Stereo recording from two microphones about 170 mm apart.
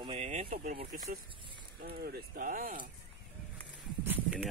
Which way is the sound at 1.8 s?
65° right (ahead or behind).